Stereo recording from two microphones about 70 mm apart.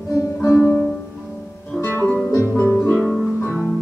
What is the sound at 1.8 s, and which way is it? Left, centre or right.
Music, left.